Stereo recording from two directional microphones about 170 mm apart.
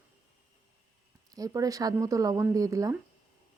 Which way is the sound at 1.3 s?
20° right (ahead or behind).